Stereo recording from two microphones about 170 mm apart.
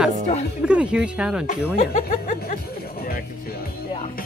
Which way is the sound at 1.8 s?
45° left (ahead or behind).